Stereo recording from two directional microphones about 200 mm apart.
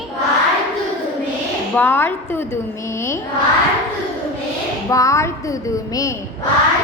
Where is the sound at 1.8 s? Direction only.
10° left (ahead or behind).